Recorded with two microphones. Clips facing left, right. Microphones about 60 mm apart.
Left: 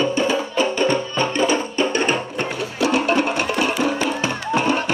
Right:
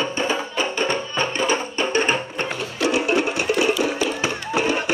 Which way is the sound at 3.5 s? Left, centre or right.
Left.